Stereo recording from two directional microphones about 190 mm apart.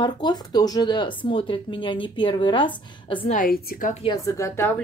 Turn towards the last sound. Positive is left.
turn(degrees=15)  # may be behind; listen again after turning